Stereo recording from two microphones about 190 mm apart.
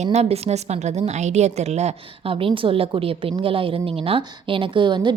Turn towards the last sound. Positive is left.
turn(degrees=-25)  # may be behind; listen again after turning